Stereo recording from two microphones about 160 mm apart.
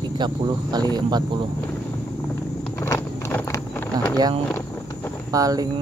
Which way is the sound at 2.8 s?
15° left (ahead or behind).